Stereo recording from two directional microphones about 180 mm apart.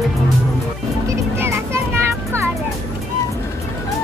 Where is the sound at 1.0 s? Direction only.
15° right (ahead or behind).